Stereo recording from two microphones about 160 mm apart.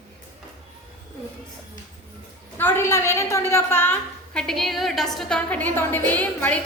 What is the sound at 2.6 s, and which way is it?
A woman's voice, 15° left (ahead or behind).